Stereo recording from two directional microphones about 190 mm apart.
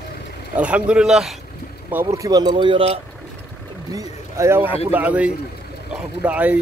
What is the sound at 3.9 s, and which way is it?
Speech, 15° right (ahead or behind).